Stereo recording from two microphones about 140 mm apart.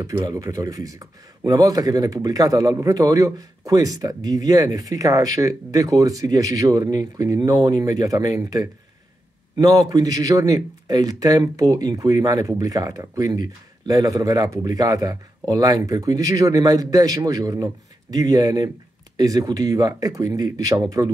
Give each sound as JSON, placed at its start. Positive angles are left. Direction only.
{"t": 0.0, "sound": "speech", "side_deg": -25}